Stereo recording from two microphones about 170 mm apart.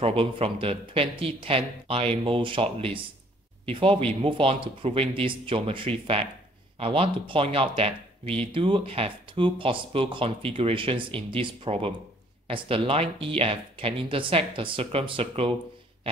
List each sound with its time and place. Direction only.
0.0 s speech: 35° right (ahead or behind)